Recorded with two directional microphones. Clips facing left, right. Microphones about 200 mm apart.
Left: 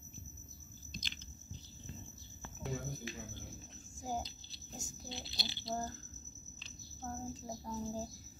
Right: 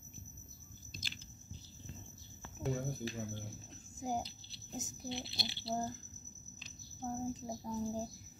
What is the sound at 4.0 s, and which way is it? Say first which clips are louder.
A child's voice: right 2 dB; 20° right (ahead or behind).